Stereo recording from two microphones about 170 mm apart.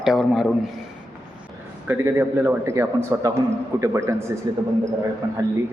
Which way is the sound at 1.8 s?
15° right (ahead or behind).